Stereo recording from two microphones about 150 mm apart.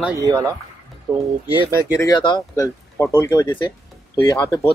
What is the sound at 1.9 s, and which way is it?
Speech, 25° left (ahead or behind).